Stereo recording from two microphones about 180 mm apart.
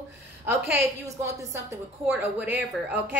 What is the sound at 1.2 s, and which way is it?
A woman's voice, 15° right (ahead or behind).